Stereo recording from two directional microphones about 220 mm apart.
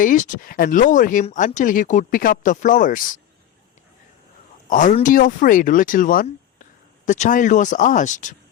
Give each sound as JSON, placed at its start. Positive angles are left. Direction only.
{"t": 0.0, "sound": "speech", "side_deg": 35}
{"t": 4.7, "sound": "speech", "side_deg": 35}